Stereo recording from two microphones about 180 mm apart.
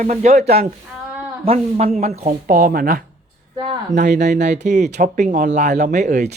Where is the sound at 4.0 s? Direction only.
40° right (ahead or behind).